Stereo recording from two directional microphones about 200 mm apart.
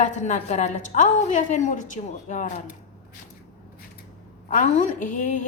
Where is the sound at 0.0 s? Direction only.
35° left (ahead or behind).